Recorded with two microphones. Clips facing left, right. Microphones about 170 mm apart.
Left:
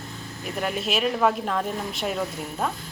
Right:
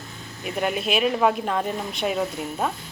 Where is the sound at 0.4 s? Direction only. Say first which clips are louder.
Right 3 dB; 5° right (ahead or behind).